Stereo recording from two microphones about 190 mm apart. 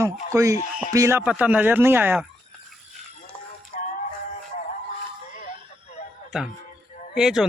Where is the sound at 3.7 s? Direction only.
40° left (ahead or behind).